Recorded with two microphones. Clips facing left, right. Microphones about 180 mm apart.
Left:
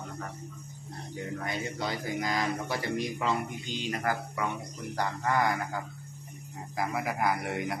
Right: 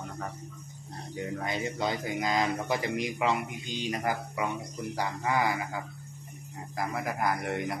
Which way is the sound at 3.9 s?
15° right (ahead or behind).